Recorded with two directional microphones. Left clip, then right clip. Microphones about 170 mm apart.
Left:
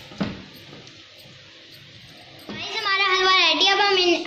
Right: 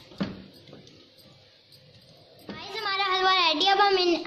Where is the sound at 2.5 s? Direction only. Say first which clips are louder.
Left 6 dB; 55° right (ahead or behind).